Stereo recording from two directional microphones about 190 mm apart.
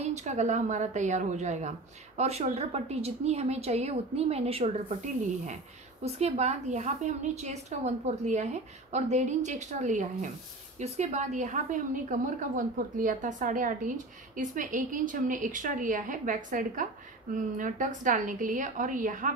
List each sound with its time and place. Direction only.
0.0 s a woman's voice: 40° right (ahead or behind)